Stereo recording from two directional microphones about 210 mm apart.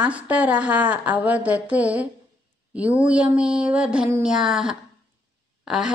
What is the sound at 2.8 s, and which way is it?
A woman's voice, 5° right (ahead or behind).